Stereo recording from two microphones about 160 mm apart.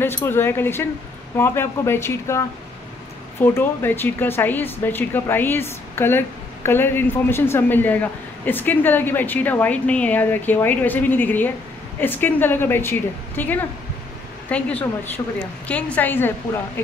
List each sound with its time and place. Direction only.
0.0 s speech: 15° left (ahead or behind)
3.4 s speech: 15° left (ahead or behind)